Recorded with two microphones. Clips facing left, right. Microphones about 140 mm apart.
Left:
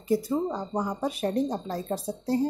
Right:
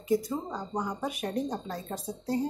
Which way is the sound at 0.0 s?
30° left (ahead or behind).